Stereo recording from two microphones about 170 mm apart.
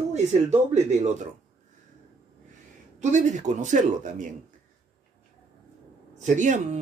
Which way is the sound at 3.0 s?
45° right (ahead or behind).